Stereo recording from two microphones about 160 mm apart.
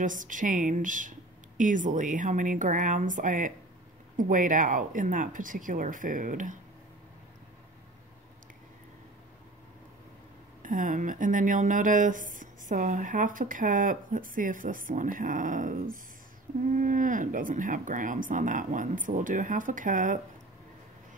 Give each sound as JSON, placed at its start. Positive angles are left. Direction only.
{"t": 0.0, "sound": "speech", "side_deg": -55}
{"t": 10.6, "sound": "speech", "side_deg": -55}